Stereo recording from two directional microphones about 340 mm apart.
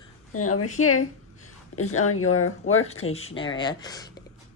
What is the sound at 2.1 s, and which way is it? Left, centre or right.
Speech, left.